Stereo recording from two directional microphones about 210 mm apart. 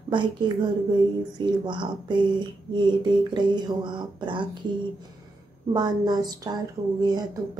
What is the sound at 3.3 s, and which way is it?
A woman's voice, 20° right (ahead or behind).